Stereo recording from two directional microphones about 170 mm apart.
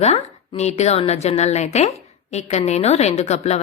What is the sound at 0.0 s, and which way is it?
A woman's voice, 40° left (ahead or behind).